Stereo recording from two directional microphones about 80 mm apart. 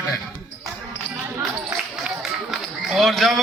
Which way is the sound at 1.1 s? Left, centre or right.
Centre.